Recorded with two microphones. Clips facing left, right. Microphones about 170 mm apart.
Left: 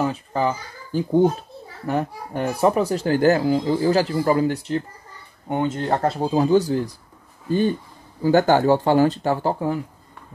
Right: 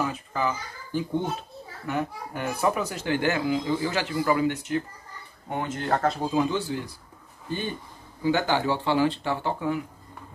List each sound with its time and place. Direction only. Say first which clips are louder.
0.0 s a child's voice: left 5 dB; 35° left (ahead or behind)
8.2 s speech: left 8 dB; 40° left (ahead or behind)